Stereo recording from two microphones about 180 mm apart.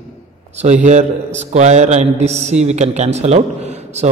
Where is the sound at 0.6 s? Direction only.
40° right (ahead or behind).